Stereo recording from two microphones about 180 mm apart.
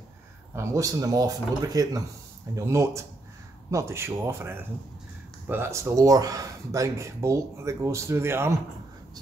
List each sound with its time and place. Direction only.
0.6 s speech: 20° right (ahead or behind)